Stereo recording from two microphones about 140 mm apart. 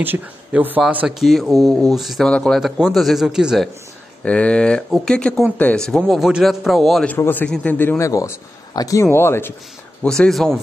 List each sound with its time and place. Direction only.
0.0 s speech: 15° right (ahead or behind)
1.0 s speech: centre (ahead or behind)
4.2 s a man's voice: 10° left (ahead or behind)
7.2 s a man's voice: 15° left (ahead or behind)
10.0 s speech: 5° left (ahead or behind)